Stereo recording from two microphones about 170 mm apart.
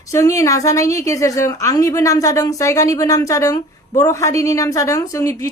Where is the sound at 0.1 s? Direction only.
20° left (ahead or behind).